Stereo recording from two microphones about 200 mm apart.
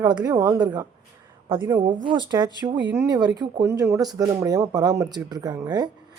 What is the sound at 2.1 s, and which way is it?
Speech, 20° right (ahead or behind).